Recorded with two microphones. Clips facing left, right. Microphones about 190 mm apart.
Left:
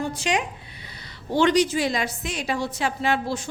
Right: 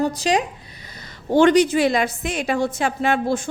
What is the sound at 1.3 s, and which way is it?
A woman's voice, 55° right (ahead or behind).